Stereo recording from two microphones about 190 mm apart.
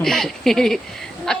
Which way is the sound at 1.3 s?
5° left (ahead or behind).